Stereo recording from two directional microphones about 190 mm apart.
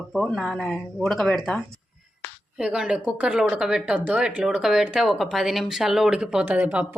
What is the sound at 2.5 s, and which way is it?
Speech, 5° right (ahead or behind).